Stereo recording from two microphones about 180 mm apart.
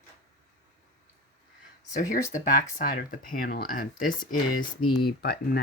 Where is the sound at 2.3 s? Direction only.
50° left (ahead or behind).